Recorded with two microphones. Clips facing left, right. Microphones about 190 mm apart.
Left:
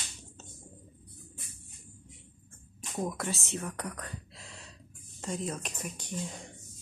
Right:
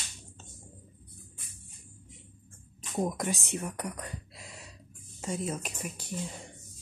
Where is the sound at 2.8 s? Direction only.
20° right (ahead or behind).